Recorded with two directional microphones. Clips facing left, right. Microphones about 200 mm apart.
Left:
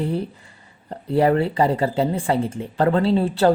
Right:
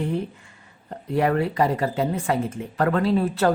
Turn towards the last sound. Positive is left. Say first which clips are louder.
# left 3 dB
turn(degrees=30)  # may be behind; listen again after turning